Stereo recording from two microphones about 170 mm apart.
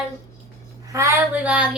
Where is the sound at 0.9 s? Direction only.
15° right (ahead or behind).